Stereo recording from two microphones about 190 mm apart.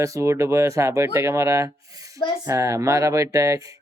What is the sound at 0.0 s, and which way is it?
Speech, 15° right (ahead or behind).